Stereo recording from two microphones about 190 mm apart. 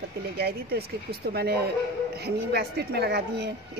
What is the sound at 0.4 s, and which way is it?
A woman's voice, 55° right (ahead or behind).